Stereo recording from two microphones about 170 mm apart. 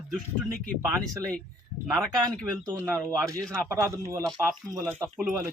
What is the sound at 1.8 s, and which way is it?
Speech, centre (ahead or behind).